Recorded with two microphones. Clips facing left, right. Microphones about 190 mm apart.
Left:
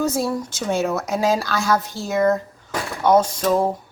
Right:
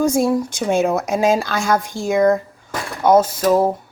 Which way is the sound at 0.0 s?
15° right (ahead or behind).